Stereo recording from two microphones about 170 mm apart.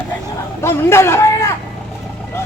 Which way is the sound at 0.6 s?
15° left (ahead or behind).